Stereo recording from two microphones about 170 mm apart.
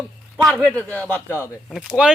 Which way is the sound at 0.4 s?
5° left (ahead or behind).